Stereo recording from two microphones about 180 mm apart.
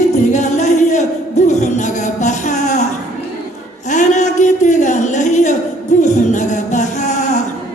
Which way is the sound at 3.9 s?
40° left (ahead or behind).